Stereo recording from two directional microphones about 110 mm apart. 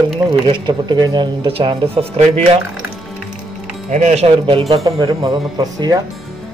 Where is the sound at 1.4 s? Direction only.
55° right (ahead or behind).